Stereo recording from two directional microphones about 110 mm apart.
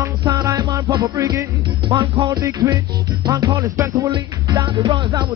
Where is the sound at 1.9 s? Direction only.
40° right (ahead or behind).